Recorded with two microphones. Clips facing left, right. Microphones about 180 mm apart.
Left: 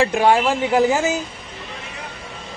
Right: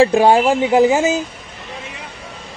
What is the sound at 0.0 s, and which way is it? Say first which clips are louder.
Speech: right 5 dB; 30° right (ahead or behind).